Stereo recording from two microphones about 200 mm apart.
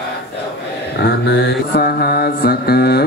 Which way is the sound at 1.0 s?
60° left (ahead or behind).